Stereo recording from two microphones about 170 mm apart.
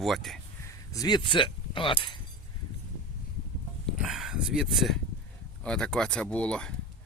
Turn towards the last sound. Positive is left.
turn(degrees=5)  # may be behind; listen again after turning